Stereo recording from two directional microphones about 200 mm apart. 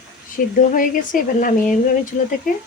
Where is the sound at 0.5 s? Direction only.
45° left (ahead or behind).